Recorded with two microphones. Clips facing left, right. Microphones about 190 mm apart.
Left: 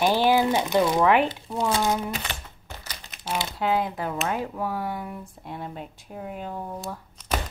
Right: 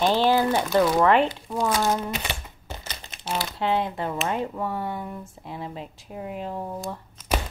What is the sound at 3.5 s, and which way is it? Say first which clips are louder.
Speech: even; 5° left (ahead or behind).